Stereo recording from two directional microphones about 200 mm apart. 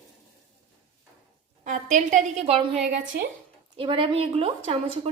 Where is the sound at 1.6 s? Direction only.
40° right (ahead or behind).